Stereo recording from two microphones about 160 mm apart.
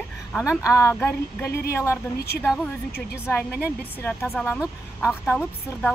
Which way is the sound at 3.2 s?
15° left (ahead or behind).